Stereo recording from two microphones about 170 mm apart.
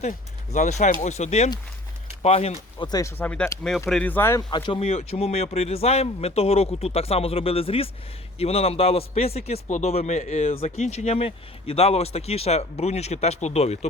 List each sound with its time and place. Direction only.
0.5 s a man's voice: 45° left (ahead or behind)
2.8 s speech: 25° left (ahead or behind)
3.2 s speech: 10° left (ahead or behind)
4.5 s a man's voice: 30° left (ahead or behind)